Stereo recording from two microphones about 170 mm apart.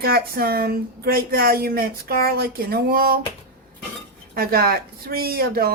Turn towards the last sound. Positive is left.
turn(degrees=-60)  # may be behind; listen again after turning